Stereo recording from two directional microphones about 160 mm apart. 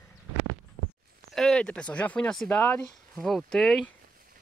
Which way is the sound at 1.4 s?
5° left (ahead or behind).